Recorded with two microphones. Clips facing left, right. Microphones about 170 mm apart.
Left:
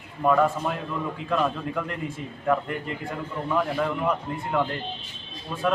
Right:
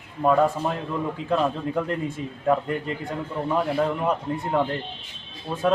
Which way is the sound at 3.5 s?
30° right (ahead or behind).